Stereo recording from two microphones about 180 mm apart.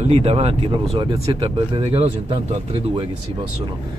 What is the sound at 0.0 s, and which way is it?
Speech, 35° right (ahead or behind).